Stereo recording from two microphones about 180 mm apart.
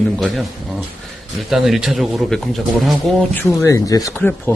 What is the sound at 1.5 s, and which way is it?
A man's voice, centre (ahead or behind).